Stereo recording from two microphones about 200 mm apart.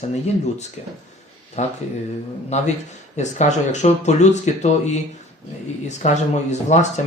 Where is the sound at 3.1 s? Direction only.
35° left (ahead or behind).